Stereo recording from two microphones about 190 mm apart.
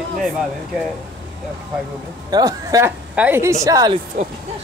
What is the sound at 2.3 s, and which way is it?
A woman's voice, 20° right (ahead or behind).